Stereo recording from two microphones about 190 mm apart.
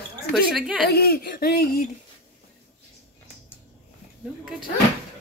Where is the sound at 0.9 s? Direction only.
55° left (ahead or behind).